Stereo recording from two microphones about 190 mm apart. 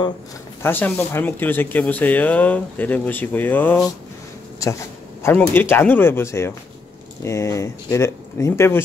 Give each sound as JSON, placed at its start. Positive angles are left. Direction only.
{"t": 0.6, "sound": "speech", "side_deg": 10}
{"t": 5.2, "sound": "speech", "side_deg": 10}